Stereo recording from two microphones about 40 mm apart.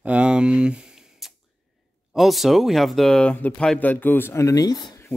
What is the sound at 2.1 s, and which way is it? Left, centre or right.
Speech, centre.